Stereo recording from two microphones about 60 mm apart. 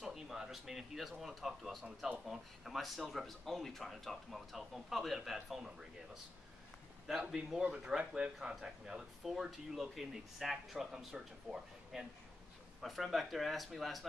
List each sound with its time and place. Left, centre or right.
0.0 s speech: centre
7.1 s a man's voice: centre
8.4 s speech: centre